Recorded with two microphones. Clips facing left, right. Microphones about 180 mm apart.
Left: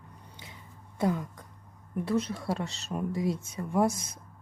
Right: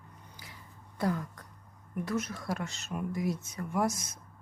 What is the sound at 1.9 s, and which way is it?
Speech, 30° left (ahead or behind).